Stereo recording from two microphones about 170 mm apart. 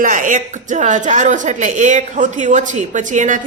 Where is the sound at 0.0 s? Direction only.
50° right (ahead or behind).